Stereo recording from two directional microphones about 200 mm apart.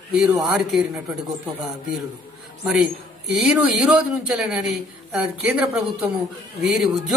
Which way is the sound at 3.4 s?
5° right (ahead or behind).